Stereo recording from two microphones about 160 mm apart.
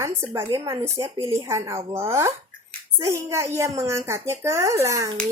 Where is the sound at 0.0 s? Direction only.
15° right (ahead or behind).